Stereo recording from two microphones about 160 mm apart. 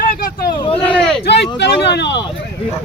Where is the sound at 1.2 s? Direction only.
90° left.